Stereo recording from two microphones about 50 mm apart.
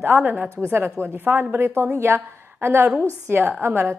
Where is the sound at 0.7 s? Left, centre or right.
Right.